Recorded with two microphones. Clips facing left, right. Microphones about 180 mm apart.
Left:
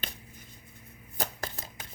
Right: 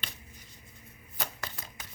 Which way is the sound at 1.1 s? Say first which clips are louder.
Left 4 dB; 40° left (ahead or behind).